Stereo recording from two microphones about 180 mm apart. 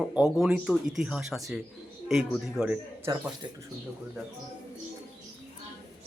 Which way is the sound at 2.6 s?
Centre (ahead or behind).